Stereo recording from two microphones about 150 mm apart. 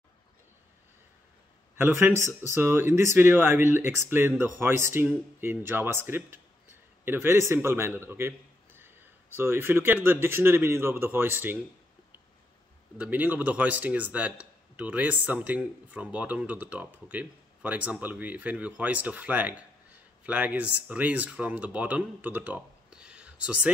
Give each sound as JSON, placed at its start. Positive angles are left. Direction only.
{"t": 1.8, "sound": "a man's voice", "side_deg": -15}
{"t": 12.9, "sound": "speech", "side_deg": -10}